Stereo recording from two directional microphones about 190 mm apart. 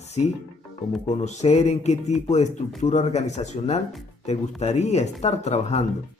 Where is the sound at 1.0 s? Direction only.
35° left (ahead or behind).